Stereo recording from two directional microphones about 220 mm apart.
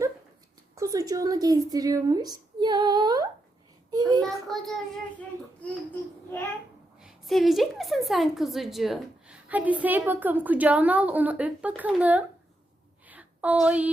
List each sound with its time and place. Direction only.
0.8 s a woman's voice: 15° right (ahead or behind)
3.9 s child singing: 15° right (ahead or behind)
4.4 s a woman's voice: centre (ahead or behind)
7.0 s a woman's voice: centre (ahead or behind)
13.1 s a sound: 5° right (ahead or behind)